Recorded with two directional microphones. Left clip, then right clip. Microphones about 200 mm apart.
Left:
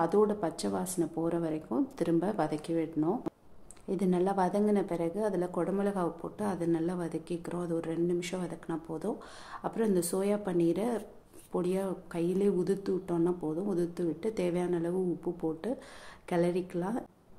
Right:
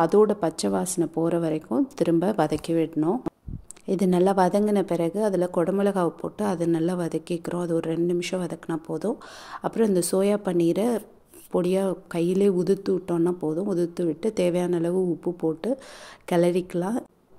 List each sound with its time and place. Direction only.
0.0 s speech: 30° right (ahead or behind)